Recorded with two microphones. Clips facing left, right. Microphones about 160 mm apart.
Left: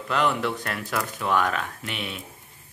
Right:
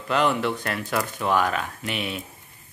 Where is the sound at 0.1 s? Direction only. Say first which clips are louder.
Right 2 dB; centre (ahead or behind).